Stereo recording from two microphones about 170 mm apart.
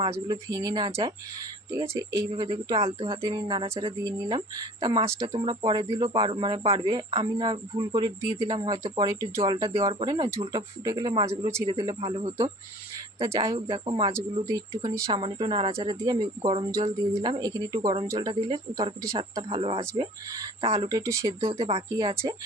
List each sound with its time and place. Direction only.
0.1 s speech: 20° right (ahead or behind)
0.9 s speech: 35° right (ahead or behind)
1.9 s speech: 15° right (ahead or behind)
2.3 s speech: 30° right (ahead or behind)
12.0 s speech: 35° right (ahead or behind)
13.4 s speech: 25° right (ahead or behind)
14.1 s speech: 15° right (ahead or behind)
21.4 s speech: 35° right (ahead or behind)
22.1 s speech: 15° right (ahead or behind)